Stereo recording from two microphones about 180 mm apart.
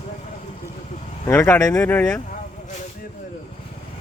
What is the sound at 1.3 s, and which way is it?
Speech, 15° left (ahead or behind).